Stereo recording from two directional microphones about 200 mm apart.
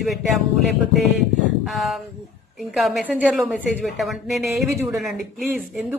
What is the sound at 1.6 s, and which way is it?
A woman's voice, centre (ahead or behind).